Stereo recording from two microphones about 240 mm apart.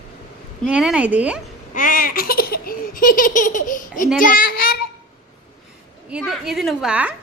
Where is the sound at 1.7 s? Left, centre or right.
Left.